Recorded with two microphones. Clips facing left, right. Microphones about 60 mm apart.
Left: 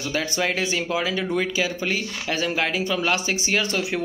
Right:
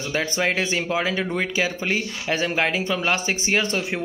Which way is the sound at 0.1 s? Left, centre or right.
Right.